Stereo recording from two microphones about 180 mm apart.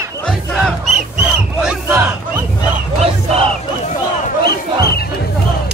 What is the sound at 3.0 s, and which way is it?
Music, 35° right (ahead or behind).